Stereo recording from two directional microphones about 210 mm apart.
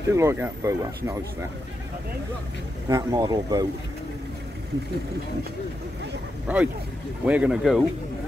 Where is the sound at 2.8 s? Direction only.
15° right (ahead or behind).